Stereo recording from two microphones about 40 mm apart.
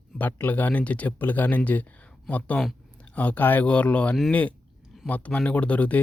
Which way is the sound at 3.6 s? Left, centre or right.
Left.